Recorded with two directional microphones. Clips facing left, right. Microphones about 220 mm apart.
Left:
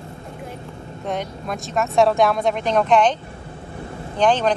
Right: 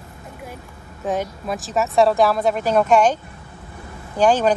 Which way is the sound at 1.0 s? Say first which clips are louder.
Right 3 dB; 5° right (ahead or behind).